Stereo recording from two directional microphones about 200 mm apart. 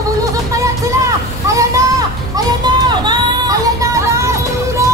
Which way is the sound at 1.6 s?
15° right (ahead or behind).